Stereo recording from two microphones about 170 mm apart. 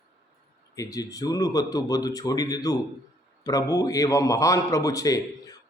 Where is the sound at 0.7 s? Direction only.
20° left (ahead or behind).